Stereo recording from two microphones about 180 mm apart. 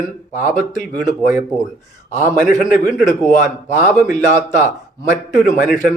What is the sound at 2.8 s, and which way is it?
Speech, 5° right (ahead or behind).